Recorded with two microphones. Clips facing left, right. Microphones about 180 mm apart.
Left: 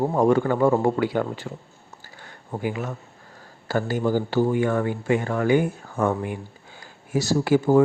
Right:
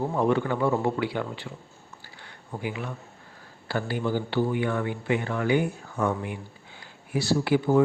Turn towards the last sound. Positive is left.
turn(degrees=45)  # may be behind; listen again after turning